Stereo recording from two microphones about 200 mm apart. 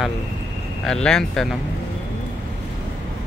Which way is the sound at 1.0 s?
5° left (ahead or behind).